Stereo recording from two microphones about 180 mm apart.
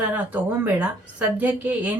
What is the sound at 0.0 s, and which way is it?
A woman's voice, 10° right (ahead or behind).